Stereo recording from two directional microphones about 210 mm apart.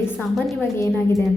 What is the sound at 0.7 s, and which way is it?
Speech, 15° left (ahead or behind).